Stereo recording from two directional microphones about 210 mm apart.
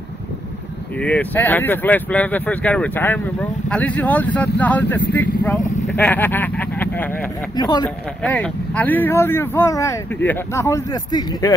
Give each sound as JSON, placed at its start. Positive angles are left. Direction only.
{"t": 1.0, "sound": "speech", "side_deg": 5}
{"t": 7.5, "sound": "speech", "side_deg": 20}
{"t": 8.2, "sound": "speech", "side_deg": 5}